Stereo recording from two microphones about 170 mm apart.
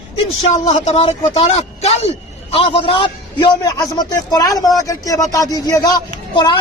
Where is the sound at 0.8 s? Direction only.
40° left (ahead or behind).